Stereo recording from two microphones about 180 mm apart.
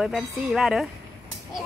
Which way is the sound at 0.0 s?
Centre (ahead or behind).